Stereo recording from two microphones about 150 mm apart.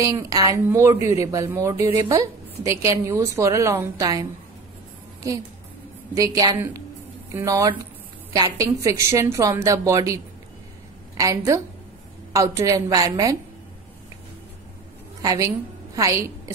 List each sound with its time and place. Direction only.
0.0 s speech: 25° right (ahead or behind)
6.1 s speech: 25° right (ahead or behind)
15.2 s a woman's voice: 20° right (ahead or behind)